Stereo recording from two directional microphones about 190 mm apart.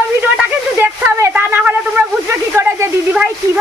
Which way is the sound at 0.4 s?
10° right (ahead or behind).